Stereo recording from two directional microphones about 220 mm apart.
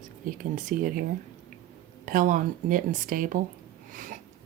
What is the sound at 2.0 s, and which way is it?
Speech, 35° right (ahead or behind).